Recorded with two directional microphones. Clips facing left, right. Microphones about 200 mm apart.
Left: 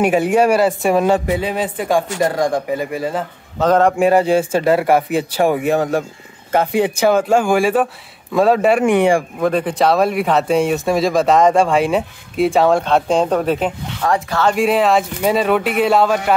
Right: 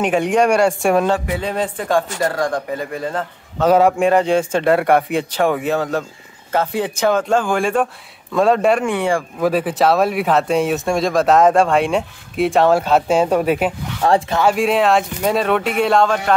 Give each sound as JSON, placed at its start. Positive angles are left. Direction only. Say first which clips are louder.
{"t": 0.0, "sound": "speech", "louder": "left 2 dB", "side_deg": 5}
{"t": 1.1, "sound": "speech", "louder": "left 4 dB", "side_deg": 20}
{"t": 1.4, "sound": "speech", "louder": "left 1 dB", "side_deg": 10}
{"t": 3.6, "sound": "a man's voice", "louder": "right 1 dB", "side_deg": -10}
{"t": 3.9, "sound": "speech", "louder": "left 2 dB", "side_deg": 10}
{"t": 8.8, "sound": "speech", "louder": "left 5 dB", "side_deg": 15}
{"t": 9.4, "sound": "speech", "louder": "even", "side_deg": -5}
{"t": 14.0, "sound": "speech", "louder": "right 3 dB", "side_deg": -30}
{"t": 14.4, "sound": "speech", "louder": "left 4 dB", "side_deg": 0}